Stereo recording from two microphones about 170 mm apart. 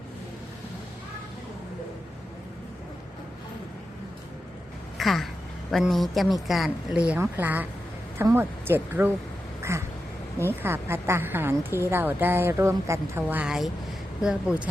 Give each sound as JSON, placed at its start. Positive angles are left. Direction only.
{"t": 4.9, "sound": "a woman's voice", "side_deg": 0}